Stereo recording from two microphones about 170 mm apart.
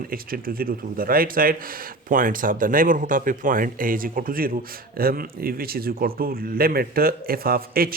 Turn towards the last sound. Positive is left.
turn(degrees=-60)  # may be behind; listen again after turning